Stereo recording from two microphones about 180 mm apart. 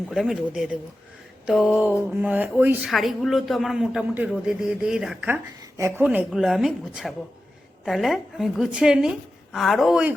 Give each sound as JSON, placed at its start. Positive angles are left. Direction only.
{"t": 0.1, "sound": "a man's voice", "side_deg": 0}
{"t": 2.9, "sound": "a man's voice", "side_deg": 0}